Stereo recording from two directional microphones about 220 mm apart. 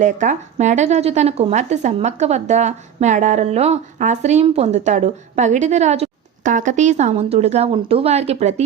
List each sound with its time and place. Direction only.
0.0 s speech: 35° right (ahead or behind)